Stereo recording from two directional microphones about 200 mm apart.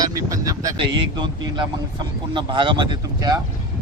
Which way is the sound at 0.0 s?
15° right (ahead or behind).